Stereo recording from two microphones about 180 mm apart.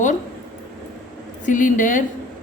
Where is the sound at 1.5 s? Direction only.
45° left (ahead or behind).